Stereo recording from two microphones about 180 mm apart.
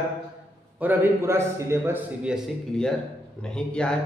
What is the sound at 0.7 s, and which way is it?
A man's voice, 10° right (ahead or behind).